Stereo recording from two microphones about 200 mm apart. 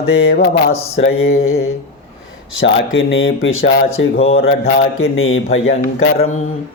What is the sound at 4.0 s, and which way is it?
Speech, 70° left (ahead or behind).